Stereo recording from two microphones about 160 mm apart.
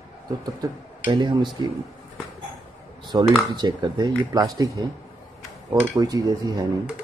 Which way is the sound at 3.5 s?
25° right (ahead or behind).